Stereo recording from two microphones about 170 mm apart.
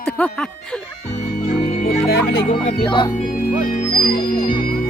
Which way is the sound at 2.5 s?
30° left (ahead or behind).